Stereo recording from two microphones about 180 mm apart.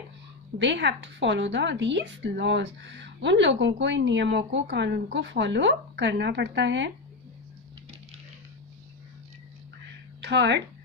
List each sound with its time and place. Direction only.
0.6 s speech: 80° right
10.2 s a woman's voice: 70° right (ahead or behind)